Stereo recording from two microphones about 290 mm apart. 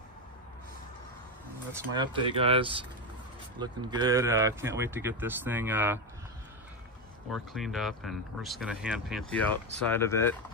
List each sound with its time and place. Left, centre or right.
1.7 s speech: centre
7.2 s speech: centre